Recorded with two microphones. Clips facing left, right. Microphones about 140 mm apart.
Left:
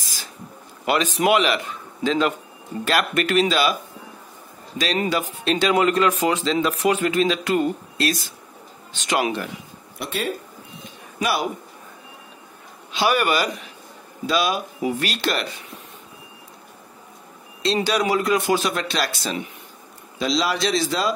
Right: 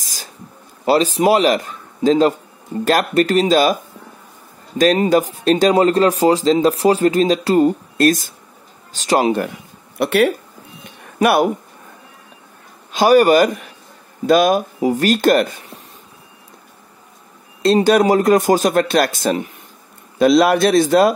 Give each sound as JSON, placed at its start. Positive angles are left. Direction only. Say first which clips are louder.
{"t": 0.0, "sound": "a sound", "louder": "right 2 dB", "side_deg": -40}
{"t": 0.8, "sound": "speech", "louder": "right 6 dB", "side_deg": -35}
{"t": 5.1, "sound": "speech", "louder": "right 8 dB", "side_deg": -40}
{"t": 10.0, "sound": "speech", "louder": "right 12 dB", "side_deg": -70}
{"t": 11.1, "sound": "speech", "louder": "right 9 dB", "side_deg": -55}
{"t": 12.9, "sound": "speech", "louder": "right 9 dB", "side_deg": -40}
{"t": 17.8, "sound": "speech", "louder": "right 8 dB", "side_deg": -45}